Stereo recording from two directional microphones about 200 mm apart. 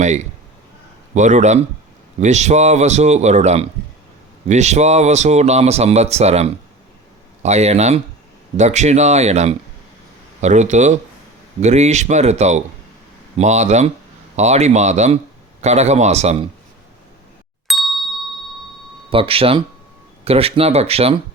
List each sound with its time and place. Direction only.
0.0 s speech: 35° right (ahead or behind)
17.7 s ding: centre (ahead or behind)
19.1 s speech: 25° right (ahead or behind)